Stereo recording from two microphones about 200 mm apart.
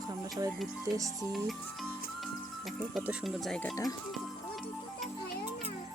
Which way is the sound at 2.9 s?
Centre (ahead or behind).